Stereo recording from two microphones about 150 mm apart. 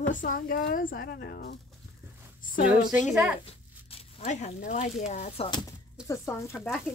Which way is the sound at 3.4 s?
45° left (ahead or behind).